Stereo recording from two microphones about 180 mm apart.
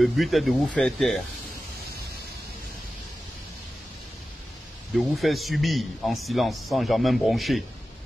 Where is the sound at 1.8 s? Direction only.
60° right (ahead or behind).